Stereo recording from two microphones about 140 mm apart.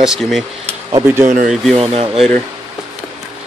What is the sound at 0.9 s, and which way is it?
Speech, 15° right (ahead or behind).